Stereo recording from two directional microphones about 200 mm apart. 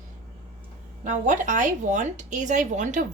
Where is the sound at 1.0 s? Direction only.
40° right (ahead or behind).